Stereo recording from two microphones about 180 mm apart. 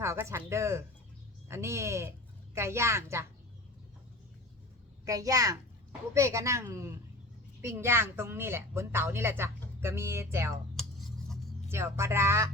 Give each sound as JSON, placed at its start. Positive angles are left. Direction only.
{"t": 0.0, "sound": "a woman's voice", "side_deg": -15}
{"t": 5.0, "sound": "a child's voice", "side_deg": -20}
{"t": 10.8, "sound": "a sound", "side_deg": 0}
{"t": 11.7, "sound": "a woman's voice", "side_deg": -15}